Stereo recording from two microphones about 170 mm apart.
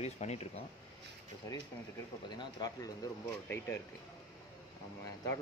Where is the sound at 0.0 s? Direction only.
40° left (ahead or behind).